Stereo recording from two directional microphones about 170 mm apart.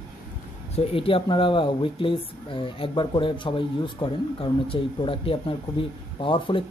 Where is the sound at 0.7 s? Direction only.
30° left (ahead or behind).